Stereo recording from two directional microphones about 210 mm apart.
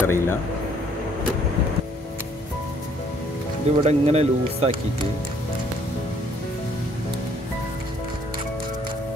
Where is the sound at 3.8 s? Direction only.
30° right (ahead or behind).